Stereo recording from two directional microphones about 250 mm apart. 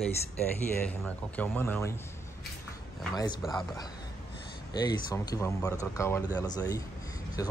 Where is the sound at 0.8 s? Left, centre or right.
Centre.